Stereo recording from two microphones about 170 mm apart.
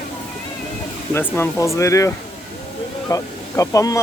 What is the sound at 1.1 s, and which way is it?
Speech, 15° left (ahead or behind).